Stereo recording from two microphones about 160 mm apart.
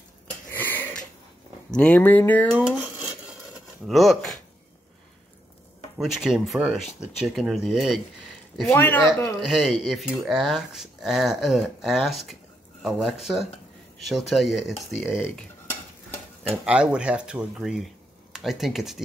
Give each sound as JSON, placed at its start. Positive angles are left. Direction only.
{"t": 0.5, "sound": "wheeze", "side_deg": 10}
{"t": 1.7, "sound": "speech", "side_deg": 5}
{"t": 2.6, "sound": "a sound", "side_deg": -10}
{"t": 3.8, "sound": "speech", "side_deg": 0}
{"t": 5.9, "sound": "speech", "side_deg": 0}
{"t": 8.7, "sound": "speech", "side_deg": 15}
{"t": 9.4, "sound": "speech", "side_deg": -5}
{"t": 16.6, "sound": "speech", "side_deg": -5}